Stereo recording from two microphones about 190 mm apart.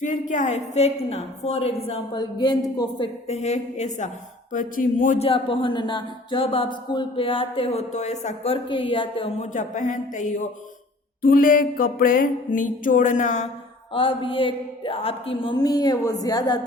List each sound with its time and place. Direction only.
0.0 s a woman's voice: 40° left (ahead or behind)
2.1 s speech: 20° left (ahead or behind)
3.2 s a woman's voice: 35° left (ahead or behind)
8.7 s speech: 25° left (ahead or behind)
9.4 s a woman's voice: 40° left (ahead or behind)
11.2 s music: 50° left (ahead or behind)
13.9 s speech: 30° left (ahead or behind)